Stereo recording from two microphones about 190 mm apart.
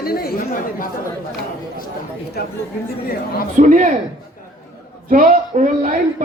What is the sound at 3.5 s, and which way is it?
Speech, 40° right (ahead or behind).